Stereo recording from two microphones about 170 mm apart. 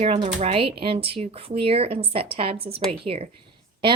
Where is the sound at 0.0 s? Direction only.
40° right (ahead or behind).